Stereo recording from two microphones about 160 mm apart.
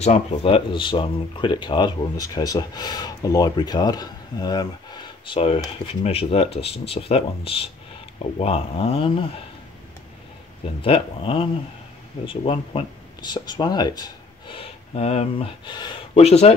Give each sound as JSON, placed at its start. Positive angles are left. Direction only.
{"t": 0.0, "sound": "speech", "side_deg": 45}
{"t": 10.8, "sound": "speech", "side_deg": 35}
{"t": 16.2, "sound": "speech", "side_deg": 40}